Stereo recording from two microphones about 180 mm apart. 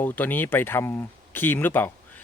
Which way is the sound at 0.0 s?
10° left (ahead or behind).